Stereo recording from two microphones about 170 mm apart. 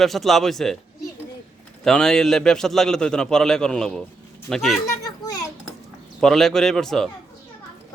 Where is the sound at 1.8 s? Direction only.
5° left (ahead or behind).